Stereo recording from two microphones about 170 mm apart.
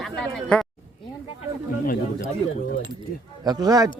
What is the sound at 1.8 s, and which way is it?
Speech, 60° left (ahead or behind).